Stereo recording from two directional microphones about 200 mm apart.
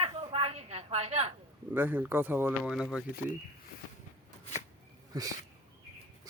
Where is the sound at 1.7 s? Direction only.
10° right (ahead or behind).